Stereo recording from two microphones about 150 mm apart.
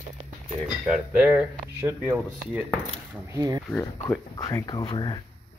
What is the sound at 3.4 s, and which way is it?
Speech, 25° right (ahead or behind).